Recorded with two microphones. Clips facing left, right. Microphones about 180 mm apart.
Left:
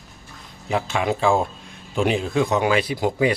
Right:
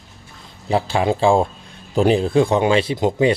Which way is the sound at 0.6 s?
30° right (ahead or behind).